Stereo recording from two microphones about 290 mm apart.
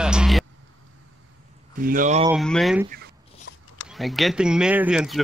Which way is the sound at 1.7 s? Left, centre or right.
Right.